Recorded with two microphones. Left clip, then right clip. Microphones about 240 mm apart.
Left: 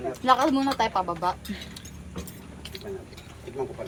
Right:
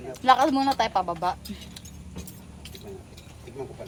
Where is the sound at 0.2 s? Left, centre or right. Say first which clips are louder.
Right 2 dB; right.